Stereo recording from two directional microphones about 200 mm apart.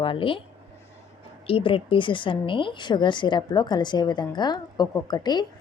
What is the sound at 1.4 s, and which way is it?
A woman's voice, 25° left (ahead or behind).